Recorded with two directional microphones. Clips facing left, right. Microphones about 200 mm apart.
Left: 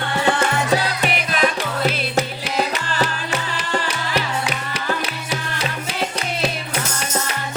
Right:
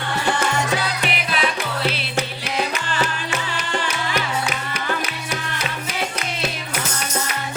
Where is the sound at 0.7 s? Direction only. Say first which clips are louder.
Left 4 dB; 45° left (ahead or behind).